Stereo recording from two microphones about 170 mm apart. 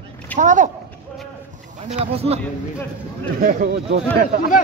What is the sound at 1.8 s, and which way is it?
Speech, 35° right (ahead or behind).